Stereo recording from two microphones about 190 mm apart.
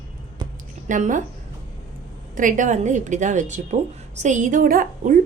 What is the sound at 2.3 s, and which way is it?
A woman's voice, 45° right (ahead or behind).